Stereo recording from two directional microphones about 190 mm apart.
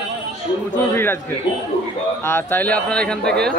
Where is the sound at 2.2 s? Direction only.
10° left (ahead or behind).